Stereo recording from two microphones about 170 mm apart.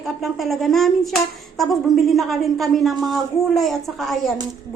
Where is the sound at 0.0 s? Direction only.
Centre (ahead or behind).